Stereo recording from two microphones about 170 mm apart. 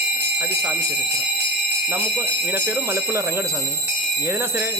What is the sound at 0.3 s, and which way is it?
Speech, 10° right (ahead or behind).